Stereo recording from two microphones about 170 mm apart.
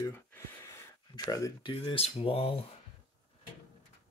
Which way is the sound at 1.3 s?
20° left (ahead or behind).